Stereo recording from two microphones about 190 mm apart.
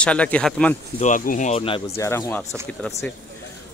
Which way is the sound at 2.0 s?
15° left (ahead or behind).